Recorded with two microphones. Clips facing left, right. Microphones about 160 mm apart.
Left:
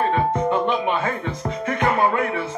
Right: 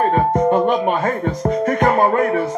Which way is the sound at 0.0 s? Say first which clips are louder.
Right 5 dB; 45° right (ahead or behind).